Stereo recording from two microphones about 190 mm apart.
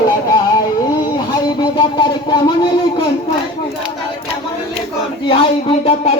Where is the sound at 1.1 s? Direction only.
25° left (ahead or behind).